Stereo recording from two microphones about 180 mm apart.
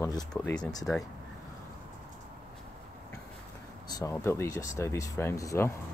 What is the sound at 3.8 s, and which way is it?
Speech, 20° left (ahead or behind).